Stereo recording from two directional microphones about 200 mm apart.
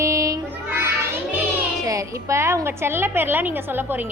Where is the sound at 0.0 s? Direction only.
15° right (ahead or behind).